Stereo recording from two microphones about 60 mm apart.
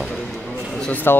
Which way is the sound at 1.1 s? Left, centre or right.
Left.